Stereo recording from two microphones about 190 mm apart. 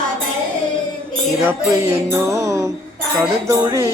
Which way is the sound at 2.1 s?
15° right (ahead or behind).